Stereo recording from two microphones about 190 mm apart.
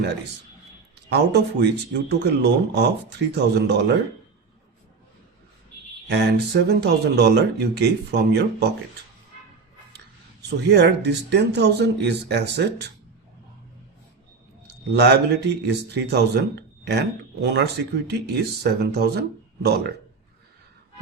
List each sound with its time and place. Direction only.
1.1 s speech: 60° right (ahead or behind)
6.1 s speech: 60° right (ahead or behind)
10.7 s speech: 65° right (ahead or behind)
14.7 s speech: 60° right (ahead or behind)
18.6 s speech: 60° right (ahead or behind)